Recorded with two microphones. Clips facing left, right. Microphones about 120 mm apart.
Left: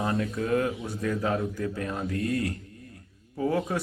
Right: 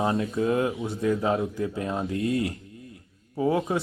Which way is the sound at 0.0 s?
25° right (ahead or behind).